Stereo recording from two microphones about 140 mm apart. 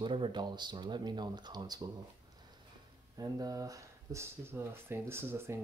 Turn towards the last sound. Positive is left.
turn(degrees=-15)  # may be behind; listen again after turning